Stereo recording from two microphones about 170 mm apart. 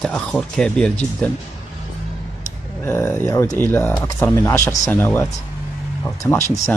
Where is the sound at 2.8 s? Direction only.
15° left (ahead or behind).